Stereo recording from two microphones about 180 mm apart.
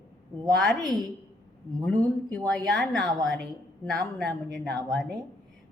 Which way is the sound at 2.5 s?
5° left (ahead or behind).